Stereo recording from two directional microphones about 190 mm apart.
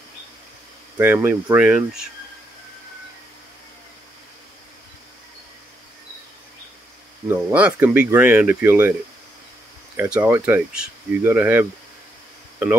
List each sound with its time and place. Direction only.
0.9 s speech: 10° right (ahead or behind)
7.2 s speech: 10° right (ahead or behind)
9.9 s speech: 5° right (ahead or behind)